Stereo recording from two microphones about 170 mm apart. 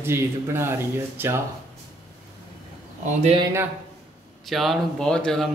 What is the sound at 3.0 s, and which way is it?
Speech, 45° right (ahead or behind).